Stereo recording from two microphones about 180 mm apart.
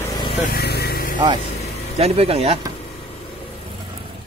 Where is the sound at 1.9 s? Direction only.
35° right (ahead or behind).